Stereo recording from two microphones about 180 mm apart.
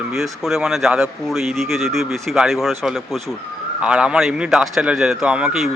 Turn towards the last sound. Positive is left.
turn(degrees=0)  # may be behind; listen again after turning